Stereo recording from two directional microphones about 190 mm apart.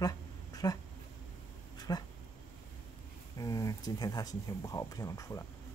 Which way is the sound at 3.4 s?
15° left (ahead or behind).